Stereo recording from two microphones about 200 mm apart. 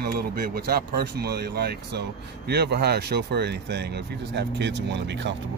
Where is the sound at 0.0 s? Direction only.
50° right (ahead or behind).